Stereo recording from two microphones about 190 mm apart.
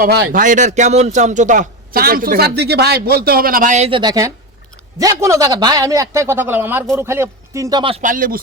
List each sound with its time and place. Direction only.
0.0 s speech: 55° right (ahead or behind)
0.4 s a man's voice: 40° right (ahead or behind)
8.0 s a man's voice: 45° right (ahead or behind)